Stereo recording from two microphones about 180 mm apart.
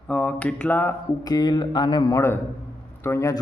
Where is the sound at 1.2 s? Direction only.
20° left (ahead or behind).